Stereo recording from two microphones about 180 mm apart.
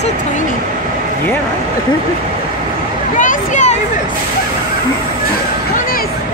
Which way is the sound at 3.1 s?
45° left (ahead or behind).